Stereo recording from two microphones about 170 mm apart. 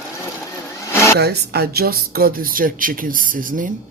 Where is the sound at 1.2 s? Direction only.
70° right (ahead or behind).